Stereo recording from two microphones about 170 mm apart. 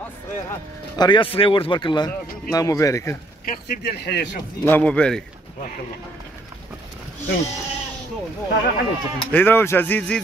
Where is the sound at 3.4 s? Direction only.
65° left (ahead or behind).